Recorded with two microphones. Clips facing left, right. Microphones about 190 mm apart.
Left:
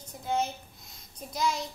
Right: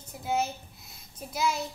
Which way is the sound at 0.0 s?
5° right (ahead or behind).